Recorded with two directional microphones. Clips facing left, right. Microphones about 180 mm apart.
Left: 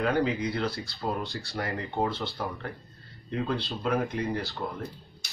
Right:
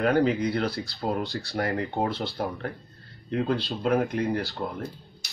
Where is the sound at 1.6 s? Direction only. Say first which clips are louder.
Right 5 dB; 55° right (ahead or behind).